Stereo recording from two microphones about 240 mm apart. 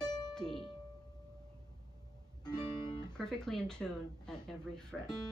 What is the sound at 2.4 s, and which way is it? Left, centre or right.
Guitar, centre.